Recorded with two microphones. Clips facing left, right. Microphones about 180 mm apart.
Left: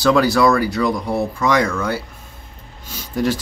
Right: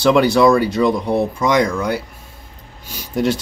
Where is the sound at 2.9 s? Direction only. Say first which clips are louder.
Right 2 dB; 15° right (ahead or behind).